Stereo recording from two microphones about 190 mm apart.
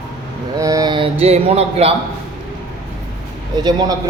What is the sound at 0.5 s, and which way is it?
Speech, 20° right (ahead or behind).